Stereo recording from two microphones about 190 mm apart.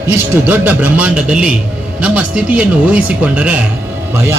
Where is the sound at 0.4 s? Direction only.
10° right (ahead or behind).